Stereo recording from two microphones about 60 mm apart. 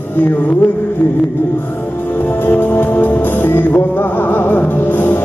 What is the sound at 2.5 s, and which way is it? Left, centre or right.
Music, left.